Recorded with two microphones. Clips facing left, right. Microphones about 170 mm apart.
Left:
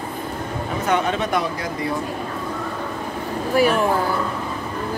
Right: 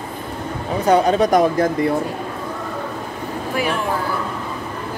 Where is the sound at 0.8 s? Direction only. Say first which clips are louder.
Right 7 dB; 35° right (ahead or behind).